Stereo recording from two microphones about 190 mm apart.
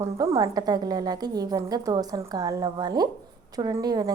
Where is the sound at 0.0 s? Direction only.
15° right (ahead or behind).